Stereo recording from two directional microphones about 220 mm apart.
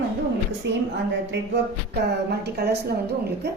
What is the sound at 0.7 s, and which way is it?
A woman's voice, 50° right (ahead or behind).